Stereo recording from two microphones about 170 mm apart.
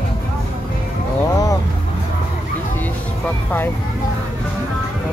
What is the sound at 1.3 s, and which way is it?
Vehicle, 20° left (ahead or behind).